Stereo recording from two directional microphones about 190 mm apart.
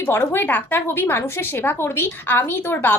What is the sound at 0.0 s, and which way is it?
A woman's voice, 10° left (ahead or behind).